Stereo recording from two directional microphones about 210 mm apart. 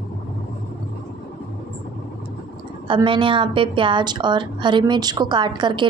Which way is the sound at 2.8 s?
25° right (ahead or behind).